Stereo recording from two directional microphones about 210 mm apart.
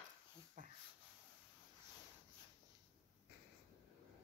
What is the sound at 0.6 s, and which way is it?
Dog, 35° right (ahead or behind).